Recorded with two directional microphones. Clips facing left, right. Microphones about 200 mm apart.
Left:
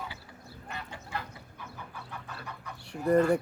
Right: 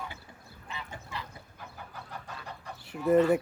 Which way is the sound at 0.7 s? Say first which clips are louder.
Left 2 dB; 55° left (ahead or behind).